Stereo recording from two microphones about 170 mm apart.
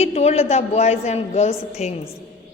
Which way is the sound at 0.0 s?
40° left (ahead or behind).